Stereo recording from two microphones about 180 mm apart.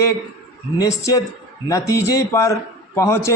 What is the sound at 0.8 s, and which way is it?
A man's voice, 20° left (ahead or behind).